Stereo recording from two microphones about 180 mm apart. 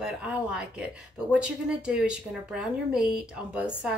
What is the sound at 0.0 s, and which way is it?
A woman's voice, 5° right (ahead or behind).